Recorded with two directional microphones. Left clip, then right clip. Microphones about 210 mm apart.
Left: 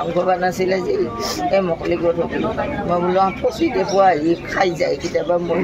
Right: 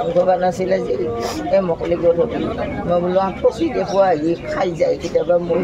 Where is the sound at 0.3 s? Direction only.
5° right (ahead or behind).